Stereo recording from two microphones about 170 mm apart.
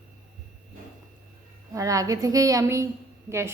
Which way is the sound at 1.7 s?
20° right (ahead or behind).